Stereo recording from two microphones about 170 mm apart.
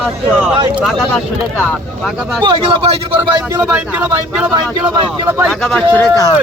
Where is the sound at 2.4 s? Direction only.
30° right (ahead or behind).